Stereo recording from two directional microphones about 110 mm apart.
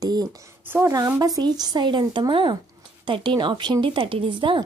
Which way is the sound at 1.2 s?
35° right (ahead or behind).